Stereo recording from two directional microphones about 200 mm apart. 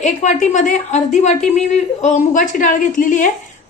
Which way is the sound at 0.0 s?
35° left (ahead or behind).